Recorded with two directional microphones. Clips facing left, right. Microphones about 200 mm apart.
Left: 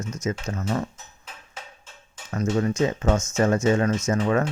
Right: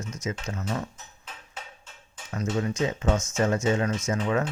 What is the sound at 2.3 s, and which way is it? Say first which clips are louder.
Speech: left 4 dB; 50° left (ahead or behind).